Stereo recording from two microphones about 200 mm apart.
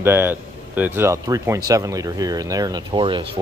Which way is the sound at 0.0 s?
10° right (ahead or behind).